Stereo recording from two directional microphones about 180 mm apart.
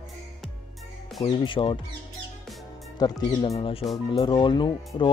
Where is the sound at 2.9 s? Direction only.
25° left (ahead or behind).